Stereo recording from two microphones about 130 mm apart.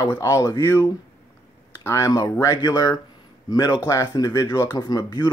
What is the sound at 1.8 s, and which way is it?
Speech, 25° left (ahead or behind).